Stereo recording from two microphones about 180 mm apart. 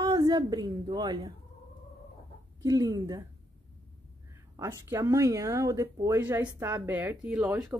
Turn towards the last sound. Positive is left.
turn(degrees=-10)  # may be behind; listen again after turning